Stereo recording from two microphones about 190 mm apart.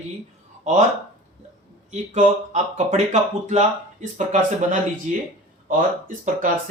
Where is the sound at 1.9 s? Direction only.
40° right (ahead or behind).